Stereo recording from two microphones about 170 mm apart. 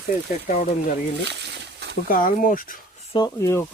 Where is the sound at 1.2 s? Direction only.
85° right.